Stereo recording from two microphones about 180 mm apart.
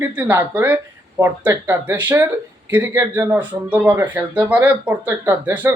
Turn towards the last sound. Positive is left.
turn(degrees=-10)  # may be behind; listen again after turning